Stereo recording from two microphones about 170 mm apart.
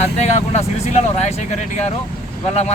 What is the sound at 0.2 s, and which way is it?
Speech, 40° left (ahead or behind).